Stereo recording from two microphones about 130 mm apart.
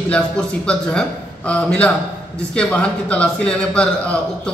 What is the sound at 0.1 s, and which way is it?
A man's voice, 10° left (ahead or behind).